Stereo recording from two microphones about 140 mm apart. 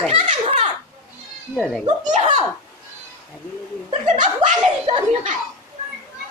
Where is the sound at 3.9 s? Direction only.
60° right (ahead or behind).